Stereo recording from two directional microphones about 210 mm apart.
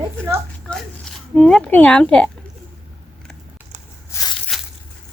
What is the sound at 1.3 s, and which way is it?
Speech, 5° left (ahead or behind).